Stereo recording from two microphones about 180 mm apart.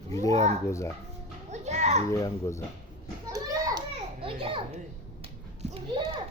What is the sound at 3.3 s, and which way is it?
Children playing, 20° right (ahead or behind).